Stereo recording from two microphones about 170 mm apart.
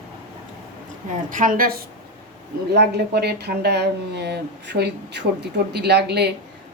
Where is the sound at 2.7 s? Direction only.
75° right (ahead or behind).